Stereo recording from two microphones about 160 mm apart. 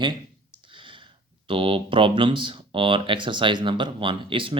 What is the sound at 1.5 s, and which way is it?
Speech, 35° right (ahead or behind).